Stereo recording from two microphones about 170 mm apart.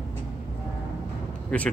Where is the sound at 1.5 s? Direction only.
5° left (ahead or behind).